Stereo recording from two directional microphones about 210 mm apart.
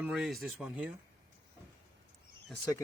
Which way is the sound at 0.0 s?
Centre (ahead or behind).